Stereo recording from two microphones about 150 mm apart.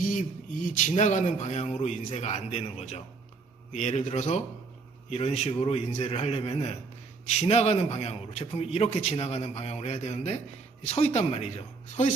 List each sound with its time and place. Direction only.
0.0 s a man's voice: 60° left (ahead or behind)